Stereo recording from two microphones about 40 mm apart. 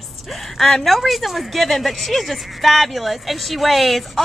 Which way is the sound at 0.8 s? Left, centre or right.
Centre.